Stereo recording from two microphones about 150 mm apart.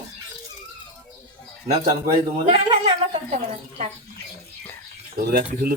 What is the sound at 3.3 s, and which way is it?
Speech, 45° right (ahead or behind).